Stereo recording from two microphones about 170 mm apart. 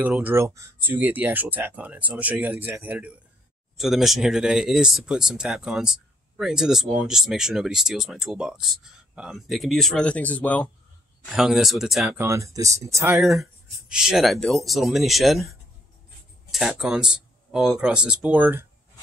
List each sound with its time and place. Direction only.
0.0 s speech: 10° right (ahead or behind); by 10.7 s 10° left (ahead or behind)
11.3 s speech: centre (ahead or behind)
12.2 s speech: 15° right (ahead or behind)
13.2 s speech: centre (ahead or behind)